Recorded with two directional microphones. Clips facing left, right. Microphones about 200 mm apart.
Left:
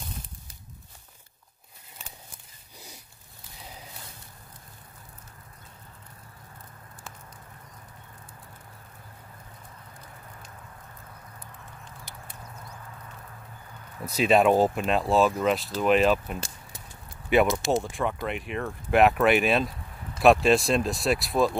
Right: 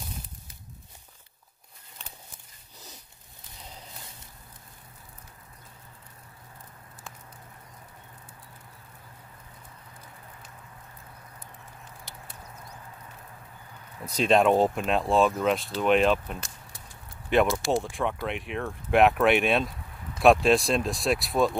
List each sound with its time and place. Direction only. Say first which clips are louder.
14.0 s speech: left 1 dB; 5° left (ahead or behind)
16.3 s a sound: left 4 dB; 30° left (ahead or behind)
17.3 s speech: left 1 dB; 5° left (ahead or behind)